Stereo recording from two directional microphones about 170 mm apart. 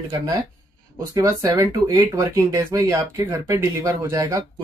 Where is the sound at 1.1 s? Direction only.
20° right (ahead or behind).